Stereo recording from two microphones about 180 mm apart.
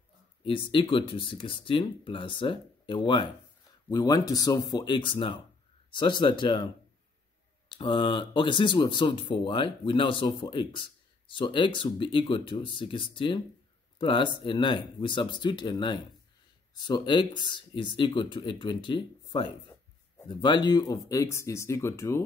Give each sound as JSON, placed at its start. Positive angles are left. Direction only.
{"t": 0.5, "sound": "speech", "side_deg": 30}
{"t": 7.7, "sound": "speech", "side_deg": 25}